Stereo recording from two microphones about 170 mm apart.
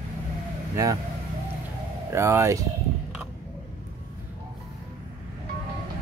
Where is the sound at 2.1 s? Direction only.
15° right (ahead or behind).